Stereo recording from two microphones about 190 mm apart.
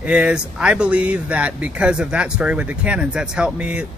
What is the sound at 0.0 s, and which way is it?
Speech, 5° right (ahead or behind).